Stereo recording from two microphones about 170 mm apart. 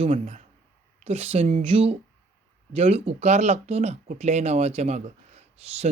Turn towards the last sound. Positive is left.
turn(degrees=-40)  # may be behind; listen again after turning